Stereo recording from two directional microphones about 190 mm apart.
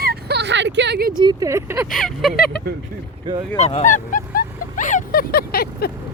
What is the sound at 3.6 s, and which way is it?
Speech, 35° left (ahead or behind).